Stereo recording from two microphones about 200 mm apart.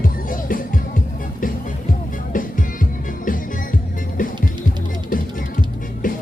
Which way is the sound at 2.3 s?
40° left (ahead or behind).